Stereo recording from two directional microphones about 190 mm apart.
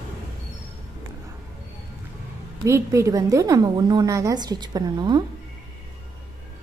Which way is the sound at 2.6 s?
15° right (ahead or behind).